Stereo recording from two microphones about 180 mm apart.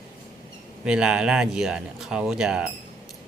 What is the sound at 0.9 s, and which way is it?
Speech, 5° right (ahead or behind).